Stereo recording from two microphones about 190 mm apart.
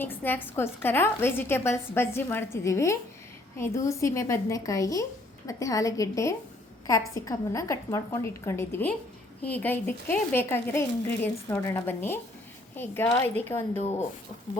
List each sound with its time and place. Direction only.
0.0 s a woman's voice: 10° left (ahead or behind)